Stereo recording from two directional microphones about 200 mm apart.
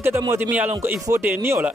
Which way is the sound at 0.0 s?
10° right (ahead or behind).